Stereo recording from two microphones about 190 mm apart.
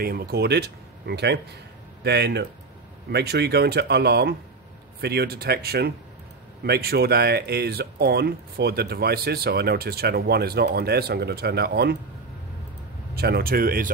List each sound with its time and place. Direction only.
0.0 s speech: 55° right (ahead or behind)
13.1 s speech: 55° right (ahead or behind)